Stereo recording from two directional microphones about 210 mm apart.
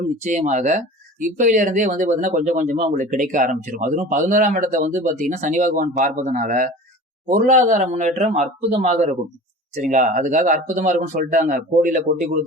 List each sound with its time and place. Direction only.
0.2 s speech: 35° right (ahead or behind)